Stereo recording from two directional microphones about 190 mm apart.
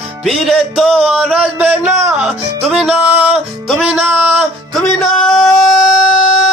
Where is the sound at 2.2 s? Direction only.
5° right (ahead or behind).